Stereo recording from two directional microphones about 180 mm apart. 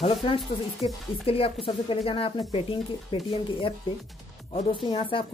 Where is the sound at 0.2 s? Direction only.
25° left (ahead or behind).